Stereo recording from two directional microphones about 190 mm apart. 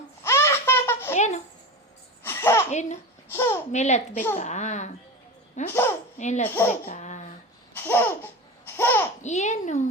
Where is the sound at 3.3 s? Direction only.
10° left (ahead or behind).